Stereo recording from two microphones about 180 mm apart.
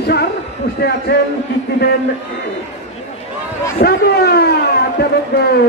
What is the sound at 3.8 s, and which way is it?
Speech, 60° left (ahead or behind).